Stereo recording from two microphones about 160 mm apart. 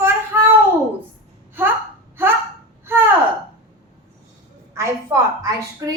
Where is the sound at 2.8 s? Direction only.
15° right (ahead or behind).